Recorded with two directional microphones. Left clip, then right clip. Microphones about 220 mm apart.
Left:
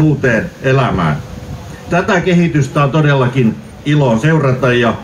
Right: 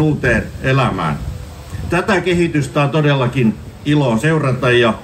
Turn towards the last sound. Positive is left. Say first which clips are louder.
# left 1 dB
turn(degrees=-50)  # may be behind; listen again after turning